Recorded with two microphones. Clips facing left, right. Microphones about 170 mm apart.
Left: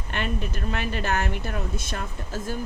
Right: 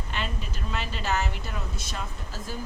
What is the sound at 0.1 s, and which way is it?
Speech, 55° left (ahead or behind).